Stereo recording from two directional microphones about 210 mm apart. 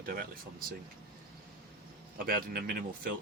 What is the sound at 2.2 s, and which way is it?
Speech, 45° right (ahead or behind).